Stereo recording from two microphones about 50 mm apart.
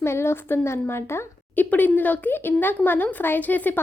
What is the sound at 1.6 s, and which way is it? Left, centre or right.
A woman's voice, left.